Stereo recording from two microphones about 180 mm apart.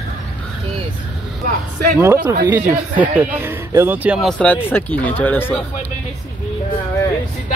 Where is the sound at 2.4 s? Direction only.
10° right (ahead or behind); by 5.5 s 10° left (ahead or behind).